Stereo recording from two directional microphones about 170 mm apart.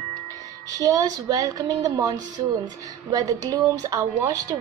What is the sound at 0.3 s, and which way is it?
Speech, 20° right (ahead or behind).